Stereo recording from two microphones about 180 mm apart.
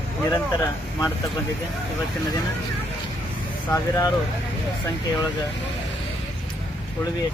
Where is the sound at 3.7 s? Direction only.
15° left (ahead or behind).